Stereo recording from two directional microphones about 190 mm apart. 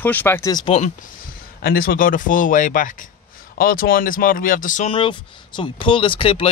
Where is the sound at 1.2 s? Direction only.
50° left (ahead or behind).